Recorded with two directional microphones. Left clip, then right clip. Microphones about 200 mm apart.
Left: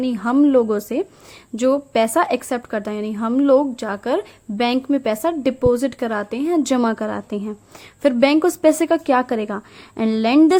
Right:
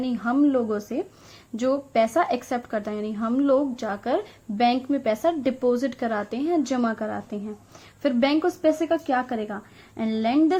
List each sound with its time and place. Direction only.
0.0 s a woman's voice: 35° left (ahead or behind)